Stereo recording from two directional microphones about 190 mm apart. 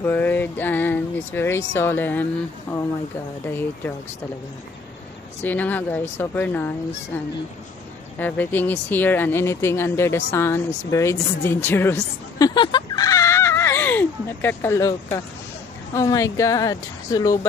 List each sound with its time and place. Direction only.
0.0 s speech: 10° left (ahead or behind)
3.4 s speech: 10° left (ahead or behind)
5.4 s speech: 10° left (ahead or behind)
8.2 s speech: 10° left (ahead or behind)